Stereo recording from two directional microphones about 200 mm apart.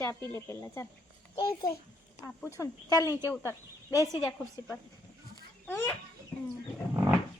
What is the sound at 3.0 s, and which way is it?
Speech, 15° right (ahead or behind).